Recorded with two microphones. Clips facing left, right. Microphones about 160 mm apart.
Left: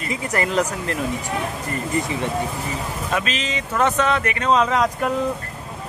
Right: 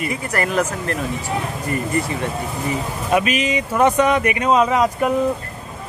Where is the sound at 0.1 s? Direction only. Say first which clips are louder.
Left 3 dB; 20° left (ahead or behind).